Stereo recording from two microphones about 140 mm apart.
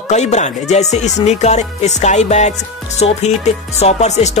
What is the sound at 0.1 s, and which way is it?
Music, 55° left (ahead or behind).